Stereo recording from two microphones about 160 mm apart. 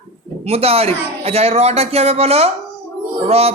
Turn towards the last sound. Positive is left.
turn(degrees=-40)  # may be behind; listen again after turning